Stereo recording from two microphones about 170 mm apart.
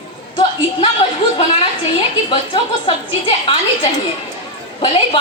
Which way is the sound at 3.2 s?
30° left (ahead or behind).